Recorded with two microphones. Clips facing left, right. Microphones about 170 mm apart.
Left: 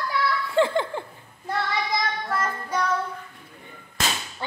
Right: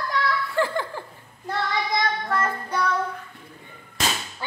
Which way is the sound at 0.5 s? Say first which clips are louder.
Left 7 dB; 20° left (ahead or behind).